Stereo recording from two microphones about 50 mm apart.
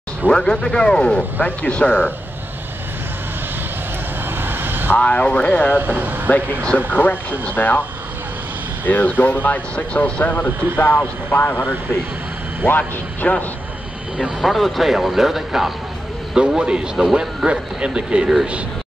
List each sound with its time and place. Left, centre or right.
0.3 s a man's voice: centre
4.3 s vehicle: right
4.9 s speech: left
5.8 s speech: right
6.9 s speech: left
8.8 s speech: left
12.6 s speech: left
14.4 s speech: centre
16.3 s speech: centre